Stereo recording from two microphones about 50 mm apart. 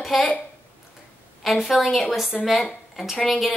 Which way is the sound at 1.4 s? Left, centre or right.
Centre.